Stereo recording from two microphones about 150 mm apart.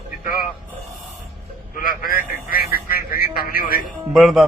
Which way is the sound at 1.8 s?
70° left (ahead or behind).